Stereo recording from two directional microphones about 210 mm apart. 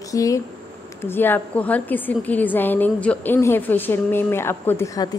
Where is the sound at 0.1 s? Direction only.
15° left (ahead or behind).